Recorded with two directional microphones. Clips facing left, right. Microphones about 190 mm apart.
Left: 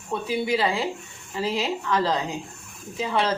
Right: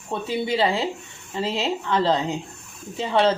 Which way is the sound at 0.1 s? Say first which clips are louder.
Even; 25° right (ahead or behind).